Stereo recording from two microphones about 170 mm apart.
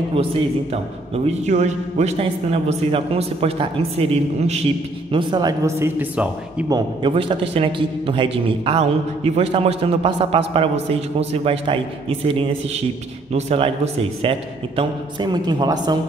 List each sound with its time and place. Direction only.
0.1 s a man's voice: 35° right (ahead or behind)
5.1 s speech: 25° right (ahead or behind)
6.7 s a man's voice: 30° right (ahead or behind)